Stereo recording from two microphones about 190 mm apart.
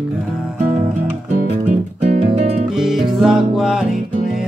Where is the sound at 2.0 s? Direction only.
35° right (ahead or behind).